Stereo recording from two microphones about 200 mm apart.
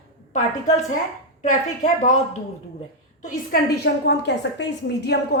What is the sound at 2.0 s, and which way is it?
A woman's voice, 35° left (ahead or behind).